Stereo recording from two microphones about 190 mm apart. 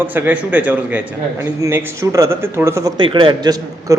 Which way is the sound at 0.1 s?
10° right (ahead or behind).